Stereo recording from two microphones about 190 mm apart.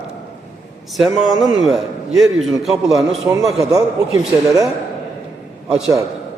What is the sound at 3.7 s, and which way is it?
Speech, 20° right (ahead or behind).